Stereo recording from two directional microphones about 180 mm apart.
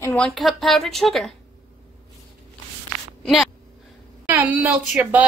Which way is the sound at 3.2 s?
Centre (ahead or behind).